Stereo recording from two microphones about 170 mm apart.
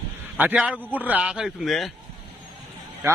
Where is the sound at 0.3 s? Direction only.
10° right (ahead or behind).